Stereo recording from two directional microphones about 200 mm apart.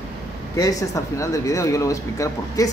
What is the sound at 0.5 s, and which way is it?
Speech, 15° left (ahead or behind).